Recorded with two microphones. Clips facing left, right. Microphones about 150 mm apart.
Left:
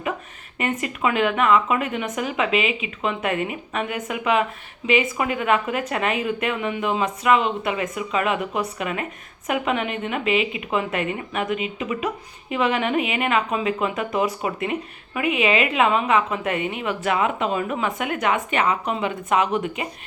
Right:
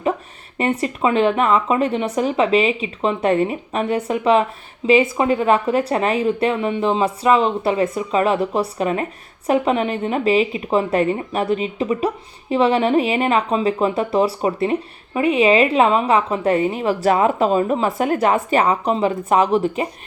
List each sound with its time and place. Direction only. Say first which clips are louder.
0.6 s speech: right 5 dB; 35° right (ahead or behind)